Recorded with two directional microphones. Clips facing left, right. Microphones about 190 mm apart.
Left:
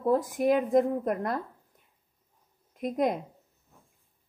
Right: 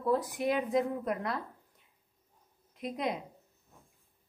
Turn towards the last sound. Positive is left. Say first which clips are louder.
# left 7 dB
turn(degrees=50)  # may be behind; listen again after turning